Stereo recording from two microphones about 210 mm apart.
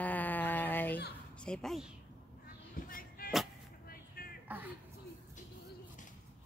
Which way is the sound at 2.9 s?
40° left (ahead or behind).